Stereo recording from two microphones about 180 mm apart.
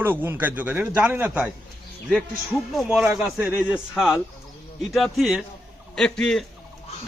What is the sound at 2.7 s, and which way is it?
A man's voice, centre (ahead or behind).